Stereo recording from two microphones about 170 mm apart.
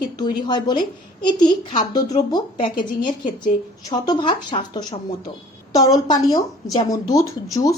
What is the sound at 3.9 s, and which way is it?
Speech, 25° left (ahead or behind).